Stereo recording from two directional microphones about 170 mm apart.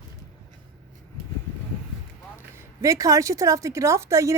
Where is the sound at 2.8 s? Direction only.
20° right (ahead or behind).